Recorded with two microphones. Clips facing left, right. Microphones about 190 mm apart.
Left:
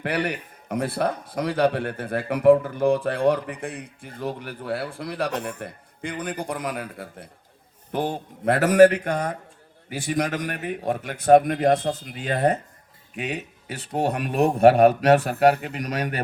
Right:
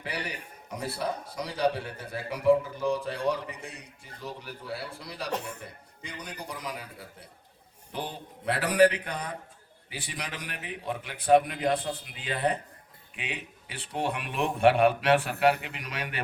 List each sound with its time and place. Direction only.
0.0 s a man's voice: 60° left (ahead or behind); by 16.2 s 40° left (ahead or behind)